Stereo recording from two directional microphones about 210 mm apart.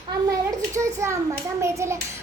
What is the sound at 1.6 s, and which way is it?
Hands, 15° right (ahead or behind).